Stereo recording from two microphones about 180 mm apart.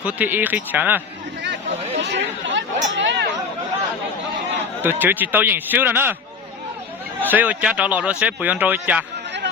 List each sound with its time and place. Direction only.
0.0 s a man's voice: 10° right (ahead or behind)
2.0 s chatter: 80° right
4.8 s a man's voice: 10° right (ahead or behind)
7.2 s a man's voice: 10° right (ahead or behind)